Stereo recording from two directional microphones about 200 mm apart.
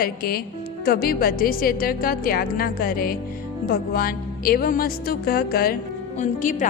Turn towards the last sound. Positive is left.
turn(degrees=40)  # may be behind; listen again after turning